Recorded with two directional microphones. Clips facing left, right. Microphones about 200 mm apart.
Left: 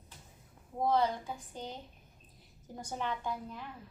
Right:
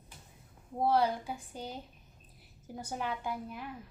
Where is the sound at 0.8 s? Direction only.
10° right (ahead or behind).